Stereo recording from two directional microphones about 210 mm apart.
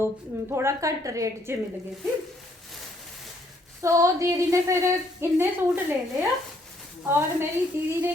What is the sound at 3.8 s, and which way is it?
A woman's voice, 15° right (ahead or behind).